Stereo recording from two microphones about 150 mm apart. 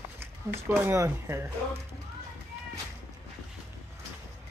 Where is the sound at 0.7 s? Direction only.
20° right (ahead or behind).